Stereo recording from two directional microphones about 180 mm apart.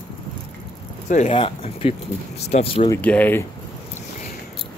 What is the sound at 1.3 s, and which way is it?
Speech, 30° left (ahead or behind).